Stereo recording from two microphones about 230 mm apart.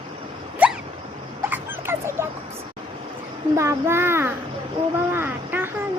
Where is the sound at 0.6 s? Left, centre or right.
Centre.